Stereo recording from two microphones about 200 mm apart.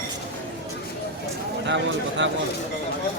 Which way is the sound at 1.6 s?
65° right (ahead or behind).